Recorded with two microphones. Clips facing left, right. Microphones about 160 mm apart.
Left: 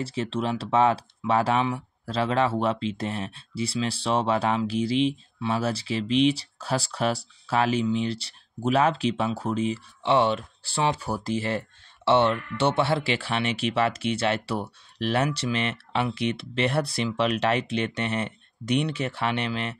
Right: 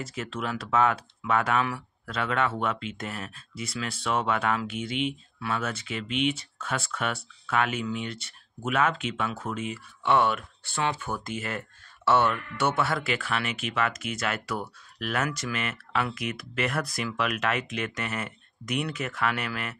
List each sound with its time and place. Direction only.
0.0 s speech: 30° left (ahead or behind)